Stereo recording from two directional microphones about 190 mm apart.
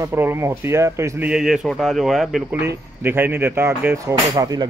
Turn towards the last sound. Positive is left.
turn(degrees=-20)  # may be behind; listen again after turning